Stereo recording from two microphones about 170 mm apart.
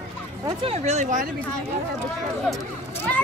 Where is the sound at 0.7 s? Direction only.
40° right (ahead or behind).